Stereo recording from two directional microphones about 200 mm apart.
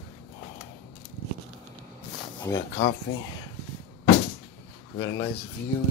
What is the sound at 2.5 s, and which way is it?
Speech, 50° left (ahead or behind).